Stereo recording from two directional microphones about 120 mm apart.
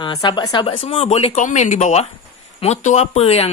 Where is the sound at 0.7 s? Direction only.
55° left (ahead or behind).